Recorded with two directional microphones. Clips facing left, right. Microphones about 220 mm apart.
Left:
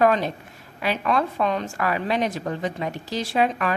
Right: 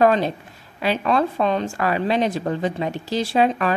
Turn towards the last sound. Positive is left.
turn(degrees=-30)  # may be behind; listen again after turning